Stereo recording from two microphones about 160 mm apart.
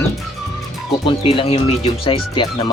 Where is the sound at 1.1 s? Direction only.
35° left (ahead or behind).